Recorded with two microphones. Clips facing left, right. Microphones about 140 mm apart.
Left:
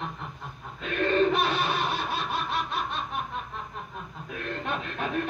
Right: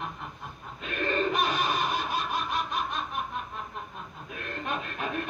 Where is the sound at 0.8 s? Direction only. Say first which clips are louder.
Left 5 dB; 65° left (ahead or behind).